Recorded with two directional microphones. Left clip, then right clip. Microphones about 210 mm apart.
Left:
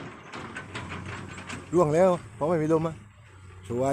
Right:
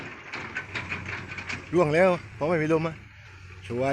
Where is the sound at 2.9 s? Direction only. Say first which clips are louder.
Right 5 dB; 60° left (ahead or behind).